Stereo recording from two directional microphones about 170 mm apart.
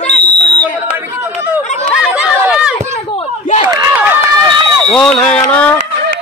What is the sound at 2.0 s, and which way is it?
Chatter, 5° right (ahead or behind).